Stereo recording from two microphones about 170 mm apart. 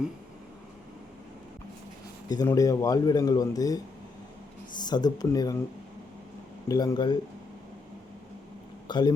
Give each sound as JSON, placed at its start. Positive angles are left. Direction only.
{"t": 2.3, "sound": "speech", "side_deg": 20}
{"t": 6.7, "sound": "speech", "side_deg": 20}
{"t": 8.9, "sound": "speech", "side_deg": 25}